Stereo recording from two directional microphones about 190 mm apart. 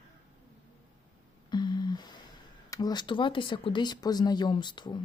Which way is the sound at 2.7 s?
20° left (ahead or behind).